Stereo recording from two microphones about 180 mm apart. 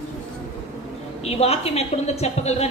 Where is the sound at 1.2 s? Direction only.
35° left (ahead or behind).